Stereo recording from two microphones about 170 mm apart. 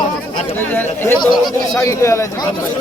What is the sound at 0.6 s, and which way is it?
Speech, 10° left (ahead or behind).